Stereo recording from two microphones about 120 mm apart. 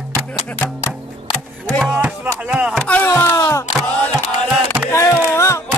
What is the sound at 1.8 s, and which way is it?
Music, 5° right (ahead or behind).